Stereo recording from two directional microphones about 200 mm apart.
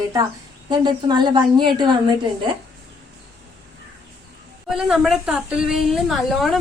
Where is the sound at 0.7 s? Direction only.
20° right (ahead or behind).